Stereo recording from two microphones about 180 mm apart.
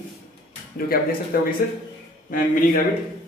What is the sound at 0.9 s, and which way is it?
Speech, 55° left (ahead or behind).